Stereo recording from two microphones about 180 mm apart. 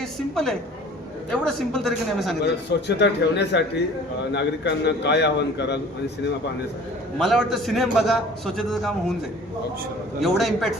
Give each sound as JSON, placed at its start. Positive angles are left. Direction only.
{"t": 0.0, "sound": "a woman's voice", "side_deg": 0}
{"t": 2.4, "sound": "a man's voice", "side_deg": 70}
{"t": 7.2, "sound": "a man's voice", "side_deg": 0}
{"t": 10.2, "sound": "a man's voice", "side_deg": 0}